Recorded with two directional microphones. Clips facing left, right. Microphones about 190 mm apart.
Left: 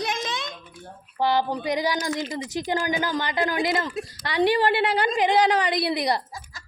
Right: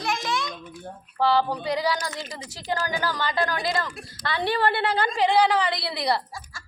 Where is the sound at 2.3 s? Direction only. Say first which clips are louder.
Left 4 dB; 20° left (ahead or behind).